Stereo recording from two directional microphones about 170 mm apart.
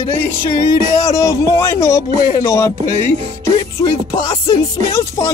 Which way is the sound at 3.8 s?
25° left (ahead or behind).